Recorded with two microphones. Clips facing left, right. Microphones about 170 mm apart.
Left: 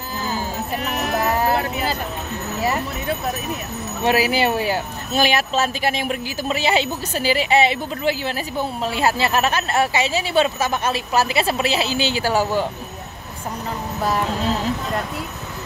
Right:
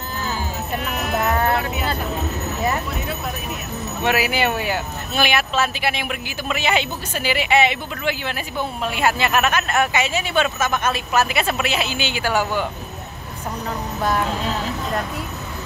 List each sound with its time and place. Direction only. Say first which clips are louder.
4.0 s speech: left 2 dB; 35° left (ahead or behind)